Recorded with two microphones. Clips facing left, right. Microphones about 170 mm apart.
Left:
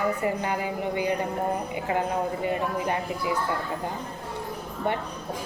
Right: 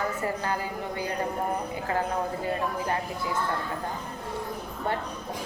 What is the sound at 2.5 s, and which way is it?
Speech, 15° left (ahead or behind).